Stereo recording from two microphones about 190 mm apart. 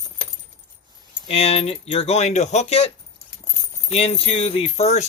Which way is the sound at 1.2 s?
30° left (ahead or behind).